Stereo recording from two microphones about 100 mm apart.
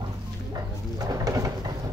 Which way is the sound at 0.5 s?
35° right (ahead or behind).